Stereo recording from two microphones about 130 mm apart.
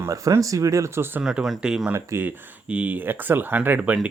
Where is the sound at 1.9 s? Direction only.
15° right (ahead or behind).